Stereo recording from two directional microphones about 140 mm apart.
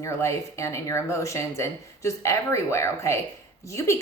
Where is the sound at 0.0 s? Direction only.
20° left (ahead or behind).